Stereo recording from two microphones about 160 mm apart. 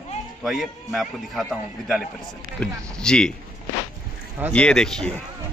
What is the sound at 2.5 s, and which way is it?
Speech, 5° left (ahead or behind).